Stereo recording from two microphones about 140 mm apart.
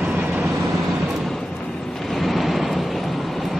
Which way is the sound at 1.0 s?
Centre (ahead or behind).